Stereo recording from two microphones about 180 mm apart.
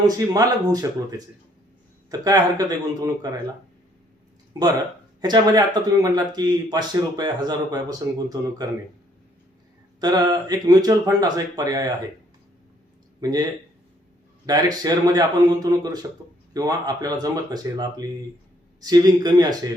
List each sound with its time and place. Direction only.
0.0 s speech: 20° right (ahead or behind)
4.5 s speech: 20° right (ahead or behind)
10.0 s speech: 20° right (ahead or behind)
14.4 s speech: 20° right (ahead or behind)